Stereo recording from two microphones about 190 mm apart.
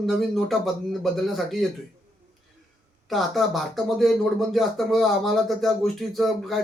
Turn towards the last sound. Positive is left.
turn(degrees=0)  # may be behind; listen again after turning